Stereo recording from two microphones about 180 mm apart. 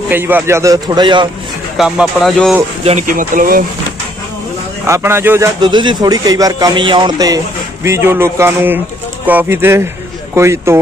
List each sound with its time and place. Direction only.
0.1 s a man's voice: 10° right (ahead or behind)
1.8 s speech: centre (ahead or behind)
2.8 s speech: 35° right (ahead or behind)
3.1 s speech: 50° right (ahead or behind)
4.8 s speech: 15° right (ahead or behind)
5.6 s speech: 25° right (ahead or behind)